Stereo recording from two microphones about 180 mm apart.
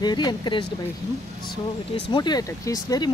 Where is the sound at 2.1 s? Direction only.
25° left (ahead or behind).